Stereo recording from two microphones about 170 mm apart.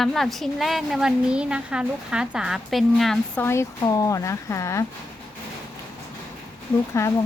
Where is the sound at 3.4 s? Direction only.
15° left (ahead or behind).